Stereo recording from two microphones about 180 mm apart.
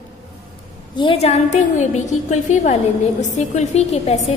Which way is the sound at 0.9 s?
30° left (ahead or behind).